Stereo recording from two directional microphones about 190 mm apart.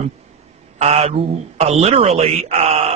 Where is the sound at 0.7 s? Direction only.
35° right (ahead or behind).